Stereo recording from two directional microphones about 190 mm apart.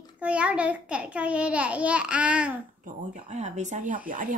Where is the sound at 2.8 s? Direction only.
40° right (ahead or behind).